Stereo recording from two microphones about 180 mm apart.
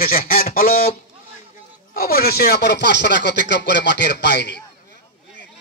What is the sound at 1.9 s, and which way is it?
A man's voice, 55° left (ahead or behind).